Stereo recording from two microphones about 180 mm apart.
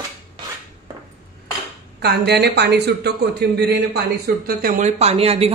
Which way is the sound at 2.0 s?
65° right (ahead or behind).